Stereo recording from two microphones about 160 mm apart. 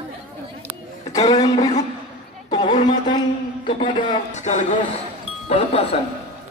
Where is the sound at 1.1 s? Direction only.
25° left (ahead or behind).